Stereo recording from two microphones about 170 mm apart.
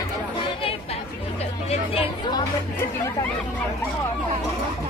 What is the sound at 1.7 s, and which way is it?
Chatter, 35° left (ahead or behind).